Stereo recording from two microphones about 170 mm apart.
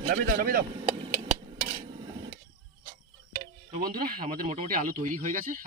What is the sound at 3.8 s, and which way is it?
Speech, 60° right (ahead or behind).